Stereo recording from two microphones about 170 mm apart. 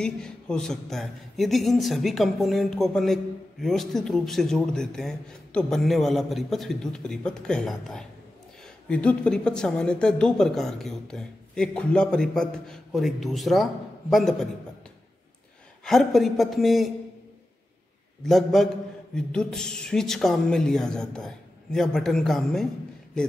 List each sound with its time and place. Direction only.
0.0 s speech: 5° left (ahead or behind)
15.8 s speech: centre (ahead or behind)
18.2 s speech: centre (ahead or behind)